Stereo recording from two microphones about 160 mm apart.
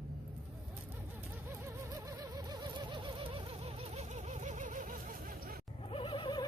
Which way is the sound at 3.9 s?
45° right (ahead or behind).